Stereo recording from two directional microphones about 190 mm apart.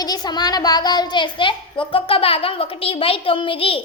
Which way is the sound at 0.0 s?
20° left (ahead or behind).